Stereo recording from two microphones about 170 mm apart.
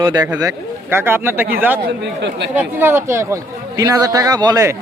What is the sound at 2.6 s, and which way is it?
A man's voice, 10° right (ahead or behind).